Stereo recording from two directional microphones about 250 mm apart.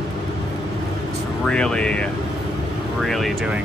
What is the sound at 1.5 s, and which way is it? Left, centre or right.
Speech, centre.